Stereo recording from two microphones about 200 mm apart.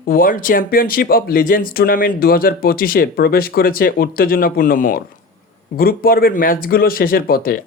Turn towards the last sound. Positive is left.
turn(degrees=45)  # may be behind; listen again after turning